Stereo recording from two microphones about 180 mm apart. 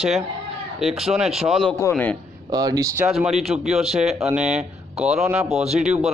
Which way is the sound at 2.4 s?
20° right (ahead or behind).